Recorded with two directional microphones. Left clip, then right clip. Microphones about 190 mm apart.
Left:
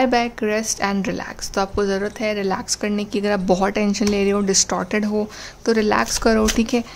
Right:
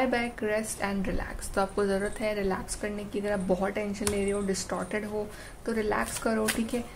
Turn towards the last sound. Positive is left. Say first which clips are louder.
# left 10 dB
turn(degrees=50)  # may be behind; listen again after turning